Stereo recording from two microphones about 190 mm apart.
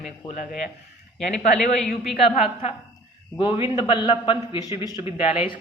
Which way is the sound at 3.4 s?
25° left (ahead or behind).